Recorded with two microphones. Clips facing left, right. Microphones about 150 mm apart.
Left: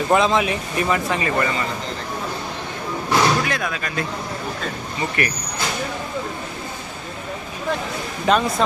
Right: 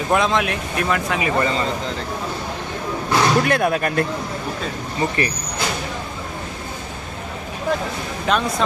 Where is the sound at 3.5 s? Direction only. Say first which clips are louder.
Right 7 dB; 55° right (ahead or behind).